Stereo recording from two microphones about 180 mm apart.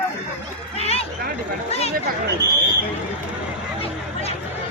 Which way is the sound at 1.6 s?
35° left (ahead or behind).